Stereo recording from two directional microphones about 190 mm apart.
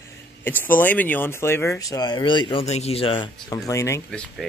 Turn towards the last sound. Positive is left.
turn(degrees=5)  # may be behind; listen again after turning